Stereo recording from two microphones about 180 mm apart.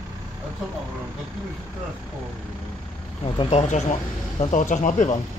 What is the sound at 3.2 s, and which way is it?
Speech, 35° left (ahead or behind).